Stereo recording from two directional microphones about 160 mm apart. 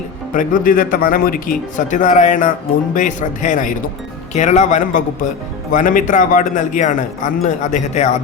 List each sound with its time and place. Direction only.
0.3 s a man's voice: 60° left (ahead or behind)